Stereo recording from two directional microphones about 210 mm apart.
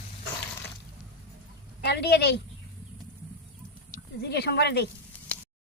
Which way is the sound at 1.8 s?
50° left (ahead or behind).